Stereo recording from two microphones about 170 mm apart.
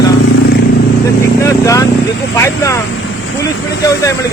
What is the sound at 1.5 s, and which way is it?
Vehicle, 20° left (ahead or behind).